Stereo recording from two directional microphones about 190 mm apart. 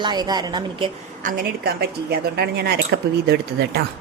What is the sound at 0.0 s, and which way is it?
Speech, 20° right (ahead or behind).